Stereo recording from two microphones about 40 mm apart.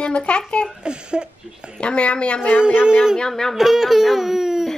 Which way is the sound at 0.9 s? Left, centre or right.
Right.